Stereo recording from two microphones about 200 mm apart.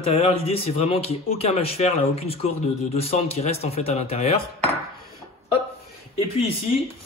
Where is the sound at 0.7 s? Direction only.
30° left (ahead or behind).